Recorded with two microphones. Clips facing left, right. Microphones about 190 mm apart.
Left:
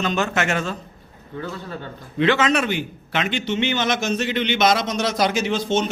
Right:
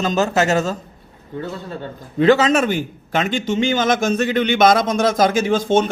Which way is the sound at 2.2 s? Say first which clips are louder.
Right 5 dB; 40° right (ahead or behind).